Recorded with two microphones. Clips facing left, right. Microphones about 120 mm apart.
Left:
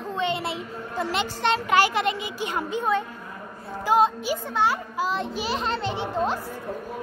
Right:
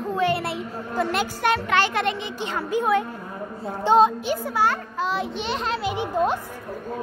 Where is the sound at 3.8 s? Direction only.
25° right (ahead or behind).